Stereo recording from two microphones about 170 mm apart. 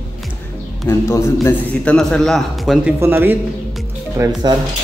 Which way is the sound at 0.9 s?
15° left (ahead or behind).